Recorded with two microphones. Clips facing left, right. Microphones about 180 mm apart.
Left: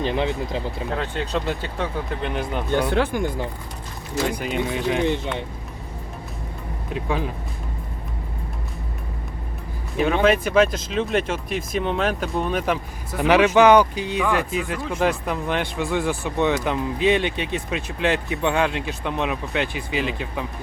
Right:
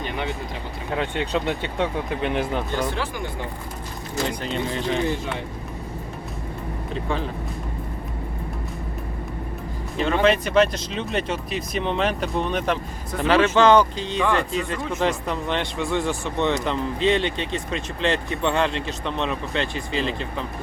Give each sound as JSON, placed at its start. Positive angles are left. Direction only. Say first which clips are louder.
{"t": 0.0, "sound": "speech", "louder": "left 5 dB", "side_deg": 30}
{"t": 2.3, "sound": "speech", "louder": "right 2 dB", "side_deg": 0}
{"t": 2.7, "sound": "speech", "louder": "left 5 dB", "side_deg": 60}
{"t": 4.3, "sound": "speech", "louder": "left 2 dB", "side_deg": 10}
{"t": 6.9, "sound": "speech", "louder": "left 2 dB", "side_deg": 10}
{"t": 10.0, "sound": "speech", "louder": "left 1 dB", "side_deg": 5}